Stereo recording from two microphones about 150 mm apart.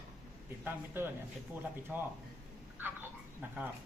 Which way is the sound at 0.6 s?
15° right (ahead or behind).